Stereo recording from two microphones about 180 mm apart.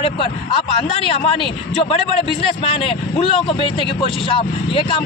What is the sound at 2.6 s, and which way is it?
A man's voice, 30° left (ahead or behind).